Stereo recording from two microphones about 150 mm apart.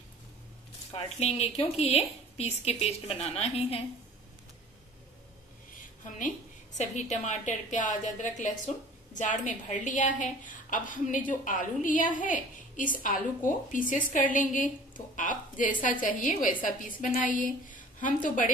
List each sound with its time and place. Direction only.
0.9 s a woman's voice: 45° left (ahead or behind)
6.1 s a woman's voice: 55° left (ahead or behind)